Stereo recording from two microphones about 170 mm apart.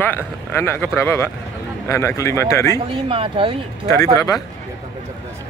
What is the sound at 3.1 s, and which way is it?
Speech, 30° right (ahead or behind).